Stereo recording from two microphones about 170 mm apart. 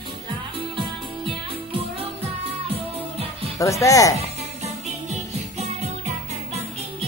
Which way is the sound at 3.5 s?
20° left (ahead or behind).